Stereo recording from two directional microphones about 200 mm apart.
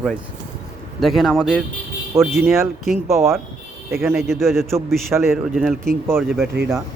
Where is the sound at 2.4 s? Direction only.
15° right (ahead or behind).